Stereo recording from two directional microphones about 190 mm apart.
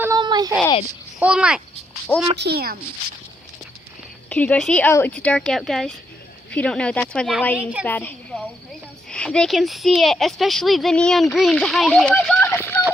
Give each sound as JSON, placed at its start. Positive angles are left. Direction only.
{"t": 0.0, "sound": "a sound", "side_deg": -20}
{"t": 1.2, "sound": "speech", "side_deg": -5}
{"t": 2.4, "sound": "speech", "side_deg": -55}
{"t": 4.3, "sound": "a woman's voice", "side_deg": 5}
{"t": 7.9, "sound": "a woman's voice", "side_deg": 10}
{"t": 12.5, "sound": "a sound", "side_deg": 10}